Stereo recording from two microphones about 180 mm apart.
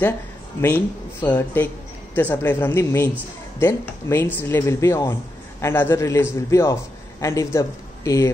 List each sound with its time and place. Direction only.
0.6 s speech: 10° left (ahead or behind)